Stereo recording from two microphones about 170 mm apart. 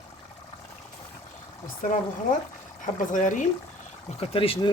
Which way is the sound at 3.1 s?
50° left (ahead or behind).